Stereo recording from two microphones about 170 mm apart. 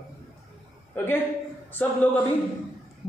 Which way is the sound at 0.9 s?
10° left (ahead or behind).